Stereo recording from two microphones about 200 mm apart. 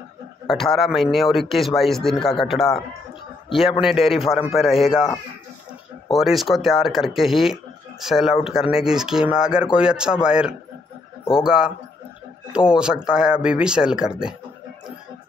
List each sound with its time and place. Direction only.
0.5 s speech: centre (ahead or behind)
3.8 s speech: centre (ahead or behind)